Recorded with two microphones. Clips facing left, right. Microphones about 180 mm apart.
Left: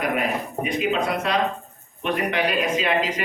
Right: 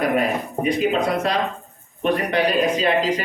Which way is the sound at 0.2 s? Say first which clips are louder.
Right 3 dB; 40° right (ahead or behind).